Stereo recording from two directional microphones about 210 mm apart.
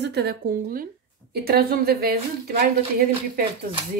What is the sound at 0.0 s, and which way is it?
Speech, 50° right (ahead or behind).